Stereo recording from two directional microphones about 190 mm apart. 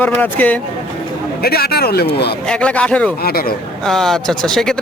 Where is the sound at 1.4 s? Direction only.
55° left (ahead or behind).